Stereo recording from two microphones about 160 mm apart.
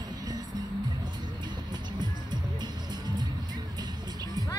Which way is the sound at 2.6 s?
25° right (ahead or behind).